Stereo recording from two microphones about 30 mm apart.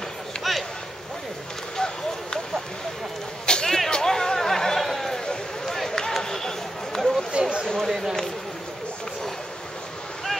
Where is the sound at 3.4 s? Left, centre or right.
Left.